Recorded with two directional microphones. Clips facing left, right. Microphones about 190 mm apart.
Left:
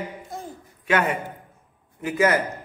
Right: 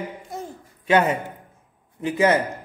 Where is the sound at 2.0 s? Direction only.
20° right (ahead or behind).